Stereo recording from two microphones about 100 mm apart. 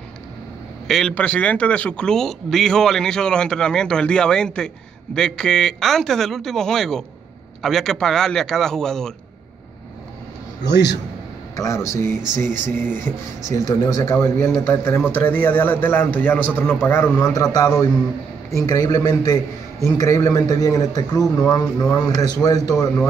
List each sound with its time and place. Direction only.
0.8 s speech: 5° left (ahead or behind)
1.1 s a man's voice: 15° left (ahead or behind)
11.5 s a man's voice: 30° left (ahead or behind)
13.7 s a man's voice: 40° left (ahead or behind); by 17.1 s 25° left (ahead or behind)
17.2 s a man's voice: 35° left (ahead or behind)